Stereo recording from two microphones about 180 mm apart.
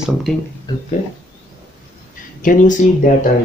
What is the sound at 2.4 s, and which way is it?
Speech, 45° left (ahead or behind).